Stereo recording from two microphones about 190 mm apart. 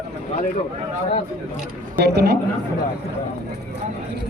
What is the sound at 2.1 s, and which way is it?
Speech, 60° right (ahead or behind).